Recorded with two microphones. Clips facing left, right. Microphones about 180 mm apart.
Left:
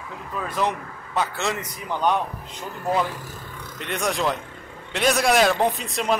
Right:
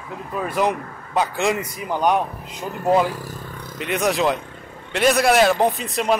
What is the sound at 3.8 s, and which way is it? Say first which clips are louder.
A man's voice: right 5 dB; 5° right (ahead or behind).